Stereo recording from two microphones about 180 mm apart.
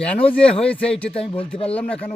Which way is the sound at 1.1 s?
30° left (ahead or behind).